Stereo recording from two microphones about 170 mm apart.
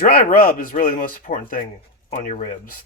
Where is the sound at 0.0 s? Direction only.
55° left (ahead or behind).